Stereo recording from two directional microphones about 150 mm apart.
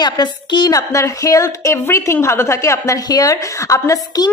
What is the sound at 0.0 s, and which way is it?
A woman's voice, 30° left (ahead or behind).